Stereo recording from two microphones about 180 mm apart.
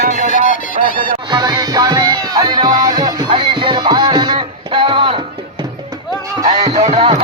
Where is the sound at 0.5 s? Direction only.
50° left (ahead or behind).